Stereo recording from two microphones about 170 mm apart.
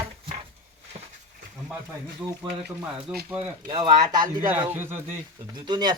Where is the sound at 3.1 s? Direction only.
5° right (ahead or behind).